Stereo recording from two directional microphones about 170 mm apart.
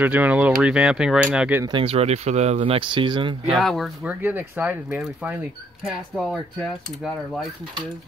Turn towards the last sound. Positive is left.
turn(degrees=5)  # may be behind; listen again after turning